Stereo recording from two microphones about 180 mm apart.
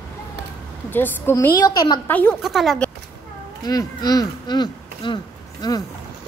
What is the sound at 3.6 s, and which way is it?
Speech, 20° left (ahead or behind).